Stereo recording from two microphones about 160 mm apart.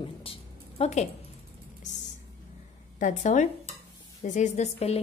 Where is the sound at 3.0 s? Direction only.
50° left (ahead or behind).